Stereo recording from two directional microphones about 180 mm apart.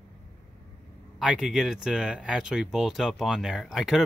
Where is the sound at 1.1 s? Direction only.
Centre (ahead or behind).